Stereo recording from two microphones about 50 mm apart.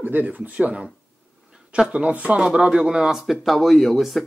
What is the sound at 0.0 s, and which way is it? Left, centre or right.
Speech, right.